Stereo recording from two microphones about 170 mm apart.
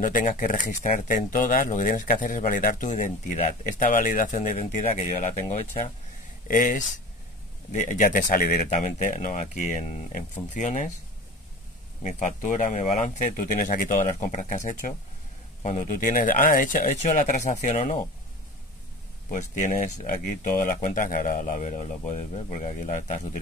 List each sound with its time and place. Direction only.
0.0 s speech: 50° left (ahead or behind)
6.4 s speech: 50° left (ahead or behind)
12.0 s speech: 45° left (ahead or behind)
19.3 s speech: 50° left (ahead or behind)